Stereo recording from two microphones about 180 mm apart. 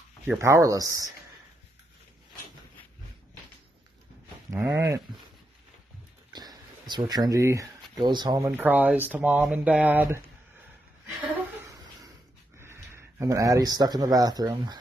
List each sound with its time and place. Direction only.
0.3 s speech: 15° right (ahead or behind)
4.5 s speech: 15° right (ahead or behind)
6.3 s speech: 20° right (ahead or behind)
8.5 s speech: 10° right (ahead or behind)
11.5 s a sound: 15° right (ahead or behind)
12.5 s speech: 15° right (ahead or behind)